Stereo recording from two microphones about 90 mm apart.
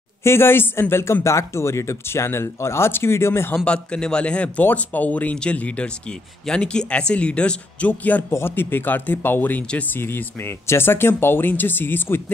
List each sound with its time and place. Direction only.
0.2 s speech: 25° left (ahead or behind)
3.6 s speech: 10° left (ahead or behind)
8.3 s speech: 25° left (ahead or behind)